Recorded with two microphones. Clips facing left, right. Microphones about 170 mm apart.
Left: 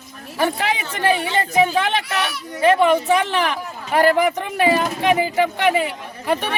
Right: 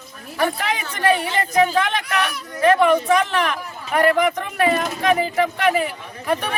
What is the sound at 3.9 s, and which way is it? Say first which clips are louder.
Speech: left 1 dB; 30° left (ahead or behind).